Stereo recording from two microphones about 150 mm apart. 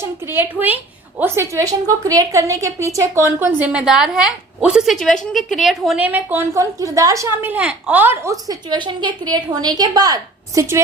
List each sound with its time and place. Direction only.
0.0 s a woman's voice: 15° right (ahead or behind)
6.1 s a woman's voice: 15° right (ahead or behind)